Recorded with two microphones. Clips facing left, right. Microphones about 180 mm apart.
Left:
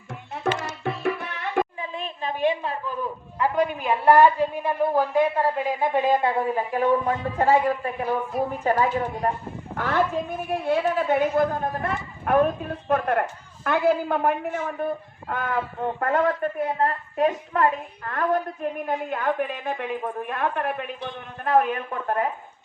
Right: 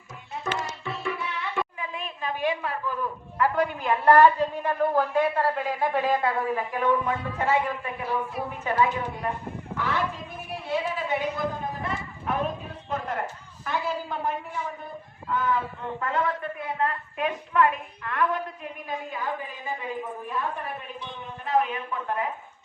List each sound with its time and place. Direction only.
0.4 s tabla: 55° left (ahead or behind)
1.8 s a woman's voice: 30° left (ahead or behind); by 22.3 s 50° left (ahead or behind)